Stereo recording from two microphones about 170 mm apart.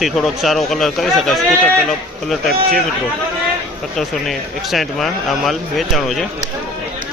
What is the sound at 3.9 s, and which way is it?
Speech, centre (ahead or behind).